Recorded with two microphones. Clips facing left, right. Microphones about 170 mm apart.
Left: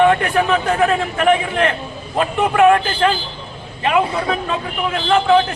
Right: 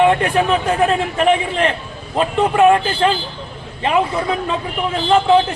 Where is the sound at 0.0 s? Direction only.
25° right (ahead or behind).